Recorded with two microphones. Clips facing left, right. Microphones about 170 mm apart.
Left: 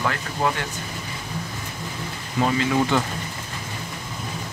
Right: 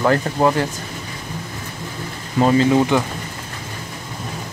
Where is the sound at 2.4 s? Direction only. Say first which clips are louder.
Right 8 dB; 35° right (ahead or behind).